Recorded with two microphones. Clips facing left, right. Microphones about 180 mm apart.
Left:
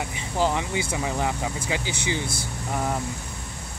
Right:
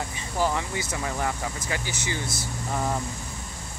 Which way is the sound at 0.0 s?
15° left (ahead or behind).